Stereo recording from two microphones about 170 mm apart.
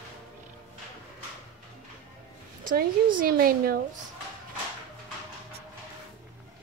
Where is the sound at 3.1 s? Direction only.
60° right (ahead or behind).